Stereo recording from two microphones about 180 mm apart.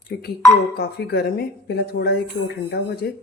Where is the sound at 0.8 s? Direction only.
60° left (ahead or behind).